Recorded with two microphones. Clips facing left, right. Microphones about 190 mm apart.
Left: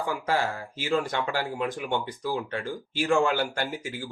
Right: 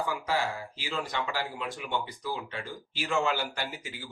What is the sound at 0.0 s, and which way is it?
Speech, 50° left (ahead or behind).